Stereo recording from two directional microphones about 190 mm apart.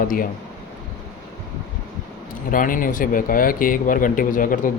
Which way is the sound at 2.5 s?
45° left (ahead or behind).